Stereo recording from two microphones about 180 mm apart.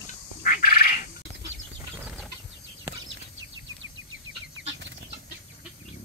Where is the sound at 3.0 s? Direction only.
90° right.